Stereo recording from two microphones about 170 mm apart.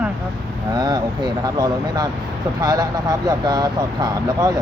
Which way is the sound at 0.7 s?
25° right (ahead or behind).